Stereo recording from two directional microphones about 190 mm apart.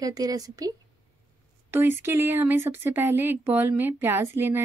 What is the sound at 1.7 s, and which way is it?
Speech, 10° right (ahead or behind).